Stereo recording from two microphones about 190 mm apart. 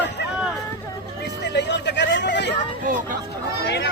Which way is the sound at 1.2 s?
65° left (ahead or behind).